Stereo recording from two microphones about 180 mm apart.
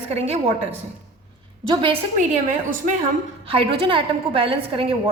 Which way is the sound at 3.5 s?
30° right (ahead or behind).